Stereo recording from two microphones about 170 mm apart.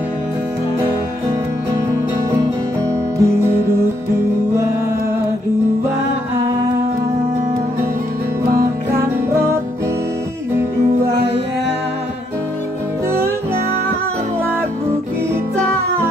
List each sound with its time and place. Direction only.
3.2 s music: 15° right (ahead or behind)
9.3 s music: 15° right (ahead or behind)